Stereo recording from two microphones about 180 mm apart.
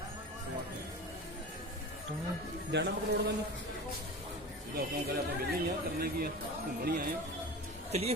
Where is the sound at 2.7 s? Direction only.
70° right (ahead or behind).